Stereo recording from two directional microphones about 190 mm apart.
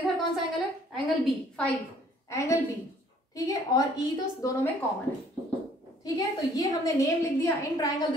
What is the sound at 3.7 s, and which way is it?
Speech, 20° left (ahead or behind).